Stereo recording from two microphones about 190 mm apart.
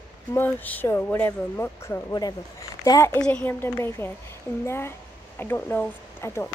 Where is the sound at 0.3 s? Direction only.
10° left (ahead or behind).